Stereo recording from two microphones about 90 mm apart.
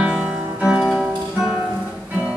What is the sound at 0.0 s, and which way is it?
Music, 10° right (ahead or behind).